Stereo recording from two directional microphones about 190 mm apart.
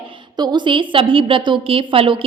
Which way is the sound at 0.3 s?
20° right (ahead or behind).